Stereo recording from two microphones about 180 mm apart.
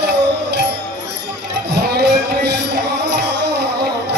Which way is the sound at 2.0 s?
70° right (ahead or behind).